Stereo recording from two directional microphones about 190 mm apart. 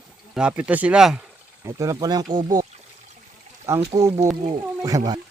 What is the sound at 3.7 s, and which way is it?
Speech, 15° right (ahead or behind).